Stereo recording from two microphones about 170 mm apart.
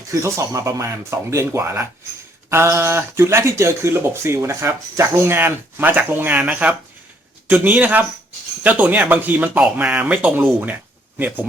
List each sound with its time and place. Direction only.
0.1 s speech: 20° right (ahead or behind)